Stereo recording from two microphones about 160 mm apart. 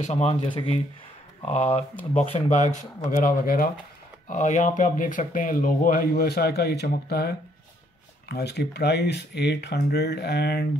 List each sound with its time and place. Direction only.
0.0 s speech: 40° left (ahead or behind); by 3.7 s 60° left (ahead or behind)
4.3 s speech: 50° left (ahead or behind); by 10.7 s 90° left